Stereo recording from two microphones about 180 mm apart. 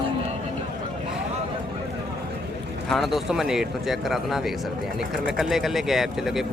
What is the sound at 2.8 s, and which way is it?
Speech, centre (ahead or behind).